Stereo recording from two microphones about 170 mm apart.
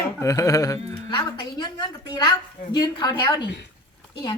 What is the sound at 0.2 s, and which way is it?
Speech, 20° left (ahead or behind).